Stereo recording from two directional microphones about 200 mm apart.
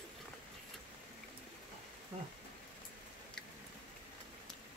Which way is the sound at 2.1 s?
30° right (ahead or behind).